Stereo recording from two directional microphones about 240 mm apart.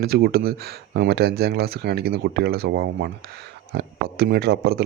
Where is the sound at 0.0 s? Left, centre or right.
Right.